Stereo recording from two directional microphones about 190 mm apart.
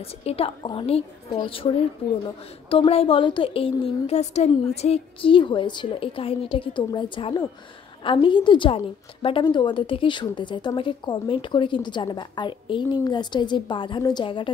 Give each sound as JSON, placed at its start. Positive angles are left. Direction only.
{"t": 0.0, "sound": "a woman's voice", "side_deg": 30}